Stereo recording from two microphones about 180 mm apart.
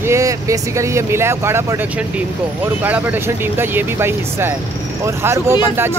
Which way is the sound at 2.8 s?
10° right (ahead or behind).